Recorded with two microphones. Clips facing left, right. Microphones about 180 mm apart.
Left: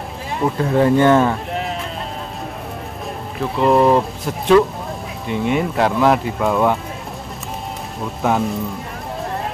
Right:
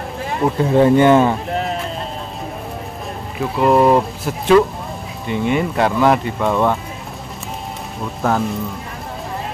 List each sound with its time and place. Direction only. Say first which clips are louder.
0.7 s speech: right 2 dB; 20° right (ahead or behind)
3.3 s speech: right 1 dB; 5° right (ahead or behind)
8.2 s speech: even; centre (ahead or behind)